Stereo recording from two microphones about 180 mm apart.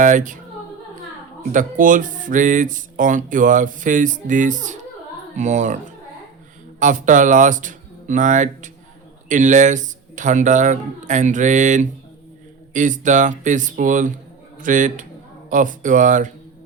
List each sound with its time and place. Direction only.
0.0 s speech: 45° right (ahead or behind)
1.5 s speech: 45° right (ahead or behind)